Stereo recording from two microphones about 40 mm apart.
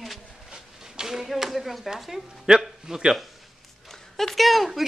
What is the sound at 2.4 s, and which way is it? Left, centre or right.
Speech, centre.